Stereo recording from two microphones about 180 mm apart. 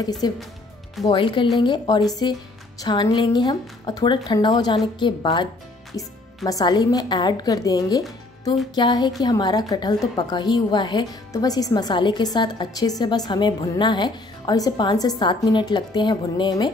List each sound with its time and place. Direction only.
0.0 s a woman's voice: 20° left (ahead or behind)